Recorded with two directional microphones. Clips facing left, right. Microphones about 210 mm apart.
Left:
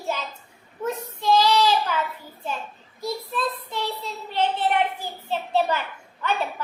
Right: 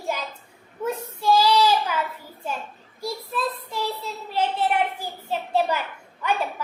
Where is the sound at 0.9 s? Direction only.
10° right (ahead or behind).